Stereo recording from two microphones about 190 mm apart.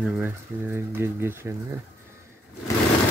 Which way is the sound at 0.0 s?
10° right (ahead or behind).